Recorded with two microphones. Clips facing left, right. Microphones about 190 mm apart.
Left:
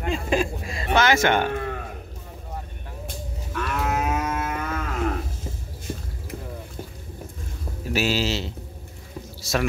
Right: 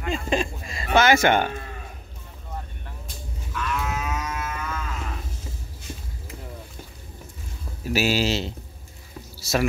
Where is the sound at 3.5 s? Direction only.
45° left (ahead or behind).